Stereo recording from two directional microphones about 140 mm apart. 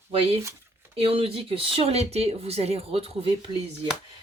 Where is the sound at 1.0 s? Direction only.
40° right (ahead or behind).